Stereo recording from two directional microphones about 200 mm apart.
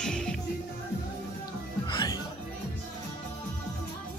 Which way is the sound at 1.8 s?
20° left (ahead or behind).